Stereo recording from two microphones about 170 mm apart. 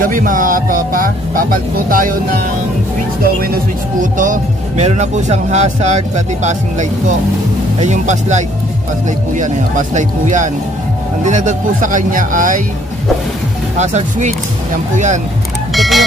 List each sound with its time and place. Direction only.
0.0 s speech: 55° right (ahead or behind)
4.0 s speech: 50° right (ahead or behind)
13.7 s speech: 45° right (ahead or behind)
15.7 s music: centre (ahead or behind)